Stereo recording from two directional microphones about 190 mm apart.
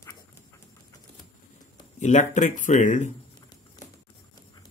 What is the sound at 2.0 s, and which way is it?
Speech, 40° left (ahead or behind).